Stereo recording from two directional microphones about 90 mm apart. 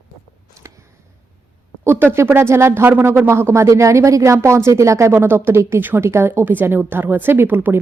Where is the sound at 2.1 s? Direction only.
25° right (ahead or behind).